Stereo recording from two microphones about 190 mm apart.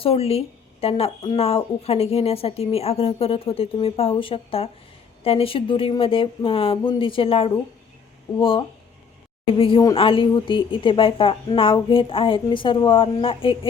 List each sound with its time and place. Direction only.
0.0 s a woman's voice: 30° left (ahead or behind)